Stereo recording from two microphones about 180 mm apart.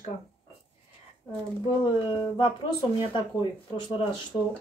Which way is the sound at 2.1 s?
25° left (ahead or behind).